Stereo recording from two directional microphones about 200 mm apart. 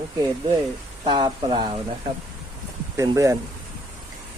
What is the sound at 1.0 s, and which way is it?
Speech, 25° right (ahead or behind).